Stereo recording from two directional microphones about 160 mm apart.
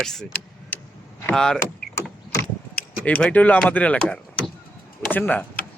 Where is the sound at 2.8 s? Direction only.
10° left (ahead or behind).